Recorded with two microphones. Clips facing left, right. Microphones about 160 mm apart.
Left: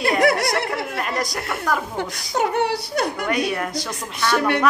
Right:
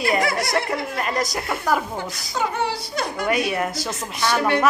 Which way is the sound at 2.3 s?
65° left (ahead or behind).